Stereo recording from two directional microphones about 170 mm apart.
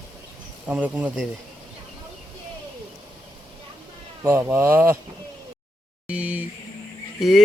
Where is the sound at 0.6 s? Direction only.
10° right (ahead or behind).